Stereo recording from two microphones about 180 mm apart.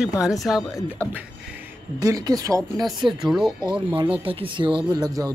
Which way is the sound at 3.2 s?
Centre (ahead or behind).